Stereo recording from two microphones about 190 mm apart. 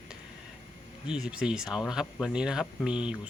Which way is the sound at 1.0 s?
5° right (ahead or behind).